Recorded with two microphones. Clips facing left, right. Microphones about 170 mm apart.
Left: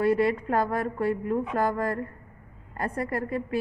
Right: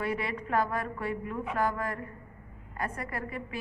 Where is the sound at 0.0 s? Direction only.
40° left (ahead or behind).